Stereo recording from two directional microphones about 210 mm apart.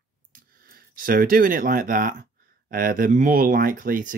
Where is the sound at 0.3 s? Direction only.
45° right (ahead or behind).